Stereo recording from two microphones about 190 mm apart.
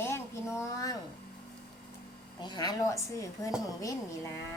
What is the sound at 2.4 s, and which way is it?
A woman's voice, 20° left (ahead or behind).